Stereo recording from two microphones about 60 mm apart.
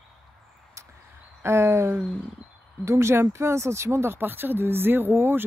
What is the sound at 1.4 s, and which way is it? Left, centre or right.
Speech, right.